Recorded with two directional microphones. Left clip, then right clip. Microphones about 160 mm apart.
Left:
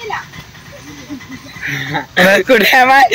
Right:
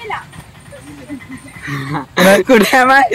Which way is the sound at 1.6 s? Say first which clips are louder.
Left 4 dB; 90° right.